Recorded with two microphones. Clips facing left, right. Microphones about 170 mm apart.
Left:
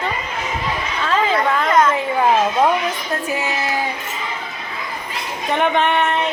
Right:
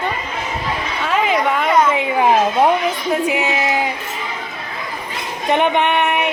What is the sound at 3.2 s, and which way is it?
Speech, 20° right (ahead or behind).